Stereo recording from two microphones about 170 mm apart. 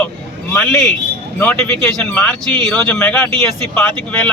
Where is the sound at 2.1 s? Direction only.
10° left (ahead or behind).